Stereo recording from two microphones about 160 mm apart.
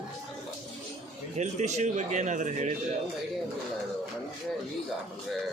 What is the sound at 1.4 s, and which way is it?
Speech, 45° right (ahead or behind).